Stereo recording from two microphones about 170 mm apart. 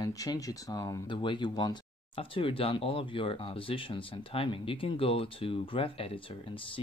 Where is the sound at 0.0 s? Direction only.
20° left (ahead or behind).